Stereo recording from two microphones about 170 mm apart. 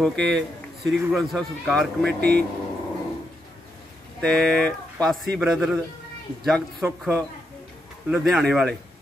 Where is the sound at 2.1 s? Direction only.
70° right (ahead or behind).